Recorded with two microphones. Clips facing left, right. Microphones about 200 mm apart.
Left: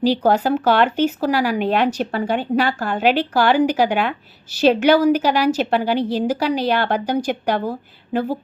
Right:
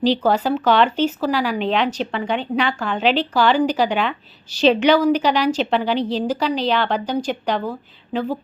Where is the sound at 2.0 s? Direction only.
45° left (ahead or behind).